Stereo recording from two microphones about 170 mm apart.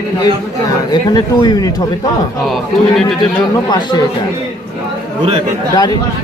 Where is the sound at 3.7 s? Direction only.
25° left (ahead or behind).